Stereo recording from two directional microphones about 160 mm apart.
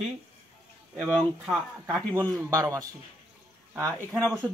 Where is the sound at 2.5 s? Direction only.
20° right (ahead or behind).